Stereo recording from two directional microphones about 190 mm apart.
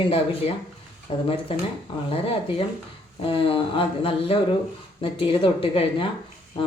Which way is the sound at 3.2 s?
30° left (ahead or behind).